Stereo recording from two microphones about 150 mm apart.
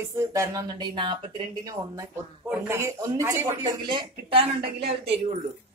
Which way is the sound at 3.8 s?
35° right (ahead or behind).